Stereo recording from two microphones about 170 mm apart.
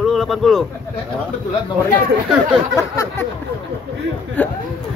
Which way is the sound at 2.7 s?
20° left (ahead or behind).